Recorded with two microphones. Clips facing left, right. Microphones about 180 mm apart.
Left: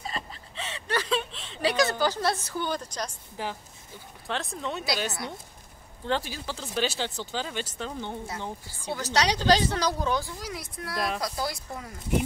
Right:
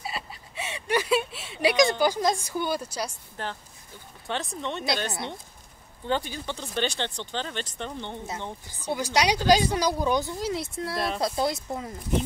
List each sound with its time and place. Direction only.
0.0 s a sound: 10° right (ahead or behind)
3.4 s a woman's voice: 10° left (ahead or behind)
6.0 s a woman's voice: centre (ahead or behind)
8.9 s speech: 10° right (ahead or behind)